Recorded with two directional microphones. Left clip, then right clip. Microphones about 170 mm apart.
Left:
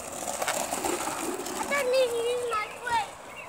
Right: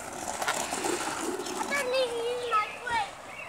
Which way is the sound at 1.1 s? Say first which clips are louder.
Even; 25° left (ahead or behind).